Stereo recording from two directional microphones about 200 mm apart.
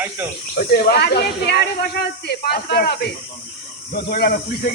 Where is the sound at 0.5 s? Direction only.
50° left (ahead or behind).